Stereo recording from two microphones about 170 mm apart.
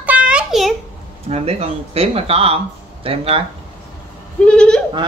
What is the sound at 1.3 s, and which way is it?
Speech, 35° right (ahead or behind).